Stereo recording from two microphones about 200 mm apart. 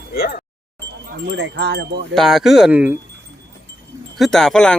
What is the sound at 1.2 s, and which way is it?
Chime, 60° right (ahead or behind).